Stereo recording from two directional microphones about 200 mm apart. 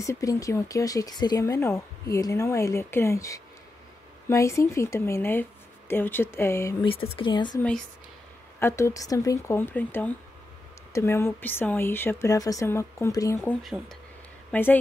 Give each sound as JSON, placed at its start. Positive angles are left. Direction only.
{"t": 0.0, "sound": "speech", "side_deg": 15}
{"t": 6.9, "sound": "speech", "side_deg": 25}
{"t": 13.6, "sound": "a woman's voice", "side_deg": 0}